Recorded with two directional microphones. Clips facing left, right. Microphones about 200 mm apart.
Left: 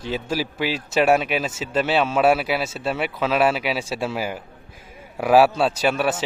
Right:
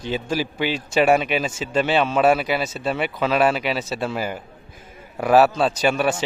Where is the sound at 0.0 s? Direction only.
5° left (ahead or behind).